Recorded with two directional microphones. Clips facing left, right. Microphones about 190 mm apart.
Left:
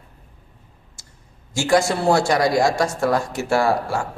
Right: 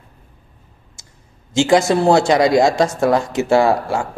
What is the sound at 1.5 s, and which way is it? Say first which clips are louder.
Speech: right 5 dB; 20° right (ahead or behind).